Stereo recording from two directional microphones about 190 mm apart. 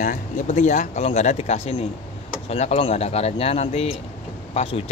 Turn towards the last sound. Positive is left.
turn(degrees=30)  # may be behind; listen again after turning